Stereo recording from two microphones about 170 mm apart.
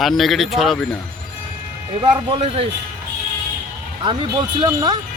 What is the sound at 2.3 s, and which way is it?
Speech, 35° right (ahead or behind).